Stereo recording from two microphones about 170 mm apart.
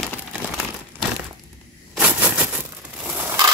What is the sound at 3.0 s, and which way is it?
Crushing, 10° right (ahead or behind).